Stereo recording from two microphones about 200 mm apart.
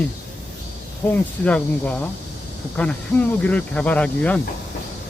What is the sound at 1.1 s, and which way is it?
Speech, 5° left (ahead or behind).